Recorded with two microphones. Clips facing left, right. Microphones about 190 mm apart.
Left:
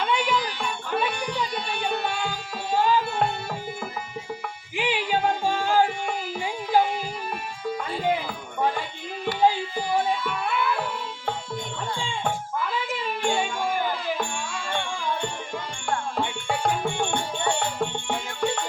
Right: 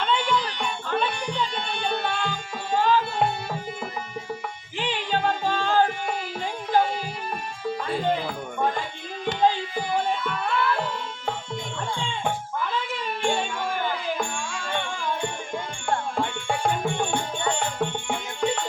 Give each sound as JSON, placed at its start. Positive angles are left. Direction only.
{"t": 0.0, "sound": "music", "side_deg": 10}
{"t": 4.8, "sound": "music", "side_deg": 10}
{"t": 9.2, "sound": "music", "side_deg": 10}
{"t": 13.2, "sound": "music", "side_deg": 5}
{"t": 16.1, "sound": "music", "side_deg": 0}